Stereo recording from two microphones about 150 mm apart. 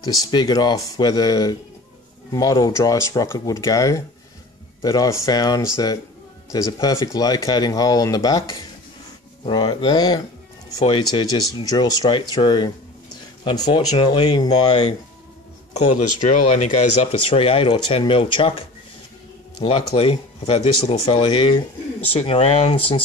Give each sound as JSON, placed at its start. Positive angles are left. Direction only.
{"t": 0.0, "sound": "speech", "side_deg": 25}
{"t": 14.5, "sound": "speech", "side_deg": 45}
{"t": 16.3, "sound": "speech", "side_deg": 50}
{"t": 19.6, "sound": "speech", "side_deg": 40}